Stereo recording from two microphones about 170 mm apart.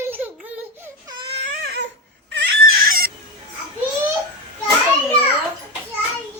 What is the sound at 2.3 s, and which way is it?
Crying, 80° right.